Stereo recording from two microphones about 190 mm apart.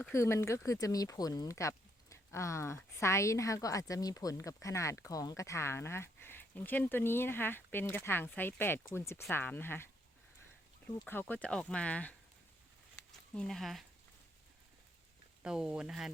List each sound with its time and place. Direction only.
0.1 s speech: 15° left (ahead or behind)
11.0 s speech: 10° left (ahead or behind)
13.3 s speech: 5° left (ahead or behind)
15.4 s speech: 5° right (ahead or behind)